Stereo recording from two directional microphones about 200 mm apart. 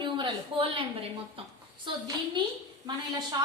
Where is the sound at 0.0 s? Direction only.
25° right (ahead or behind).